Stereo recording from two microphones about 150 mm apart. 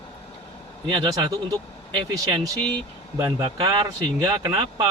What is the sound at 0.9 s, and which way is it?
Speech, 30° right (ahead or behind).